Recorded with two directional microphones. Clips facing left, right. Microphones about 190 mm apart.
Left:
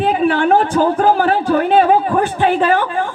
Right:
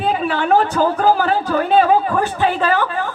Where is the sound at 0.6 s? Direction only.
15° left (ahead or behind).